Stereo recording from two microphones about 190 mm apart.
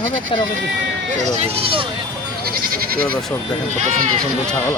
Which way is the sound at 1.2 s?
35° right (ahead or behind).